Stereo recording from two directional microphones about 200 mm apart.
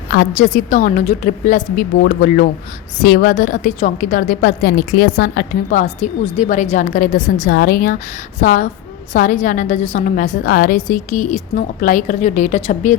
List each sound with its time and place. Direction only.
0.1 s a woman's voice: 45° left (ahead or behind)